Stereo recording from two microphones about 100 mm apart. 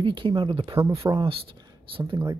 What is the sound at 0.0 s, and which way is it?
Speech, 55° right (ahead or behind).